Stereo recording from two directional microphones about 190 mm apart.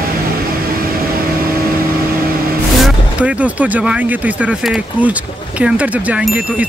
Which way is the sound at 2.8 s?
5° right (ahead or behind).